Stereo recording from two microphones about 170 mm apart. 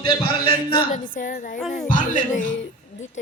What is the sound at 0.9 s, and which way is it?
Speech, 50° left (ahead or behind).